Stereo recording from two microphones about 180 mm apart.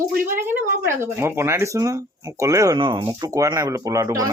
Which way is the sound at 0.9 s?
15° right (ahead or behind).